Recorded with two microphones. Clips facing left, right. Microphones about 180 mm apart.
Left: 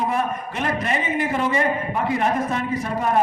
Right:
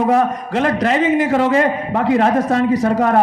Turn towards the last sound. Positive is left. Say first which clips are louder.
# right 8 dB
turn(degrees=-90)